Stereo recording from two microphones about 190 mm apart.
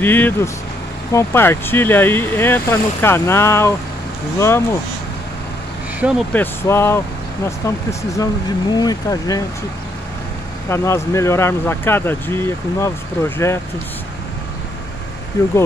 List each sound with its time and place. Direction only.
0.0 s speech: 10° left (ahead or behind)
5.9 s speech: 5° right (ahead or behind)
6.3 s speech: 10° left (ahead or behind)
8.2 s speech: 20° left (ahead or behind)
10.7 s speech: 15° left (ahead or behind)